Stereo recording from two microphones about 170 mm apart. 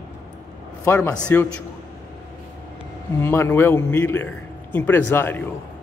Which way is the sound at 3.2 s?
15° left (ahead or behind).